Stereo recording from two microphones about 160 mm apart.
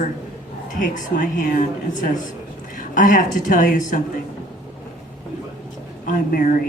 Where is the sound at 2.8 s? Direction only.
55° left (ahead or behind).